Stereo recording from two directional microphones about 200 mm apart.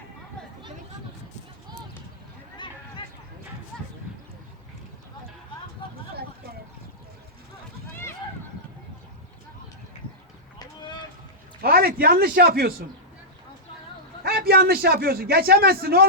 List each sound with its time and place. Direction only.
2.6 s a sound: 25° left (ahead or behind)
10.6 s boat: 20° left (ahead or behind)
11.6 s a man's voice: 50° right (ahead or behind)
14.3 s a man's voice: 50° right (ahead or behind)